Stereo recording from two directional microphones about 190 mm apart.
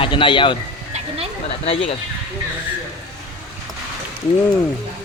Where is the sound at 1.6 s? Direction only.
30° left (ahead or behind).